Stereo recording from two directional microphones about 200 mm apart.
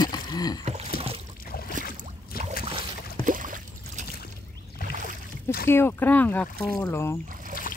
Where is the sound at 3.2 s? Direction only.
40° right (ahead or behind).